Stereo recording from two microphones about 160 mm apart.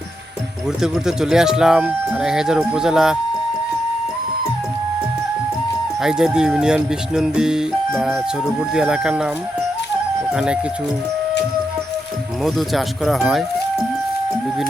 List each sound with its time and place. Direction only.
0.8 s speech: 5° right (ahead or behind)
6.0 s speech: 5° right (ahead or behind)
10.3 s speech: 5° right (ahead or behind)
12.4 s speech: centre (ahead or behind)